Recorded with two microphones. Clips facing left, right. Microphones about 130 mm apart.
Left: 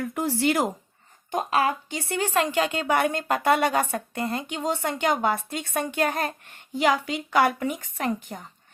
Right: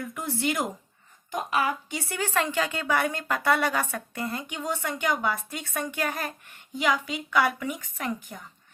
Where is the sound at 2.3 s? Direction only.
15° left (ahead or behind).